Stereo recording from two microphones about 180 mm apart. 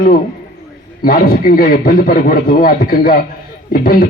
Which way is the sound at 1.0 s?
55° left (ahead or behind).